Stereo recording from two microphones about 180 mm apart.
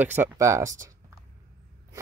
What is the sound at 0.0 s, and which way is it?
Speech, 10° right (ahead or behind).